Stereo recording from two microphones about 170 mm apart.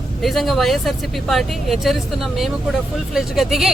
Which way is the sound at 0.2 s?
Centre (ahead or behind).